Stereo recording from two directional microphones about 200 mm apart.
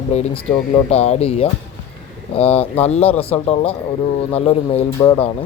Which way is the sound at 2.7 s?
30° left (ahead or behind).